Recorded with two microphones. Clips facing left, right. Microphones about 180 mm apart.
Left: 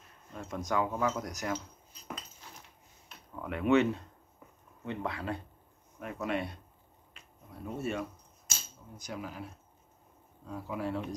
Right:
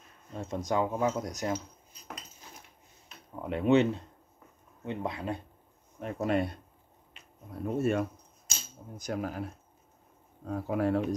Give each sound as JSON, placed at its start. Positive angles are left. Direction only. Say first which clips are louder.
{"t": 0.3, "sound": "speech", "louder": "right 3 dB", "side_deg": -25}
{"t": 3.3, "sound": "speech", "louder": "right 2 dB", "side_deg": -25}
{"t": 5.9, "sound": "speech", "louder": "right 5 dB", "side_deg": -35}
{"t": 7.6, "sound": "speech", "louder": "right 7 dB", "side_deg": -50}